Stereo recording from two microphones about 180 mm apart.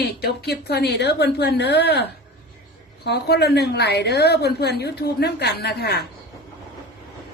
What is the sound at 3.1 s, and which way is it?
Speech, 65° left (ahead or behind).